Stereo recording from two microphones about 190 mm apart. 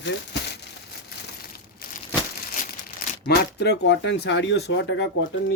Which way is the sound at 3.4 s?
60° left (ahead or behind).